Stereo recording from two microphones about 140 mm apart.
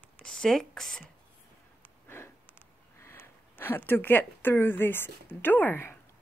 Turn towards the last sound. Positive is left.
turn(degrees=15)  # may be behind; listen again after turning